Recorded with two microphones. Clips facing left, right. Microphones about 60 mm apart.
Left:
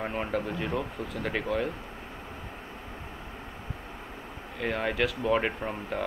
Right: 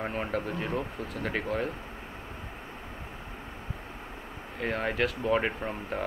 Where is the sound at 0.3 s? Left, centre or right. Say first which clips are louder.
Left 1 dB; right.